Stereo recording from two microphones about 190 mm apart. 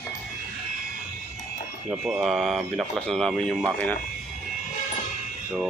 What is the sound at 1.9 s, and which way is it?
Speech, centre (ahead or behind).